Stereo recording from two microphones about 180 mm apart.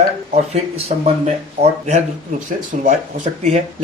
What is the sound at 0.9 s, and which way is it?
Speech, 40° right (ahead or behind).